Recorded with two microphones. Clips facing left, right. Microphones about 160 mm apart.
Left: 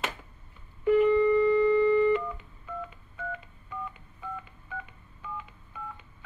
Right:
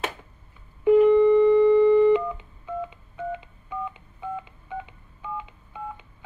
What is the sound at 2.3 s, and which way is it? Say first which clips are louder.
Telephone dialing: right 7 dB; 20° right (ahead or behind).